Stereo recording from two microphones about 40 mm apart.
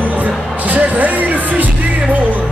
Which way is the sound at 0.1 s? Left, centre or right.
Right.